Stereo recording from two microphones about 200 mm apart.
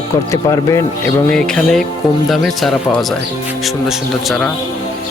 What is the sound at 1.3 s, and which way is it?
Speech, 5° left (ahead or behind).